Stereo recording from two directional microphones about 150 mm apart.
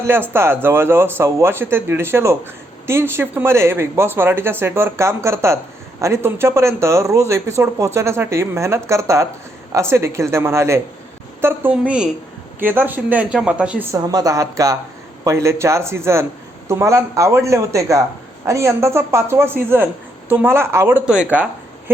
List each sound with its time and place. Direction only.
0.0 s speech: 15° right (ahead or behind)
13.9 s speech: 25° right (ahead or behind)
21.0 s speech: 5° right (ahead or behind)